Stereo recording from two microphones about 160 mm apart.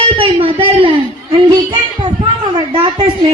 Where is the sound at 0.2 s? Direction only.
35° right (ahead or behind).